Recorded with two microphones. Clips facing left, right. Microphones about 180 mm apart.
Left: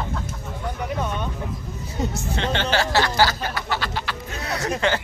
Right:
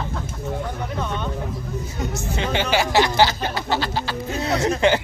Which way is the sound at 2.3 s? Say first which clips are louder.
Right 2 dB; 10° right (ahead or behind).